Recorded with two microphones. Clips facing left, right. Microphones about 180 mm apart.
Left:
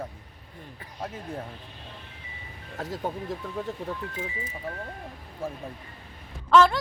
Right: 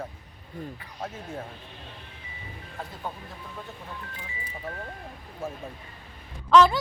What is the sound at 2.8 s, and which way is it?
Speech, 90° left.